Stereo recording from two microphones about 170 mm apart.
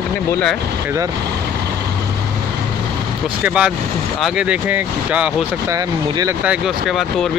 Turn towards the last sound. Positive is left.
turn(degrees=-20)  # may be behind; listen again after turning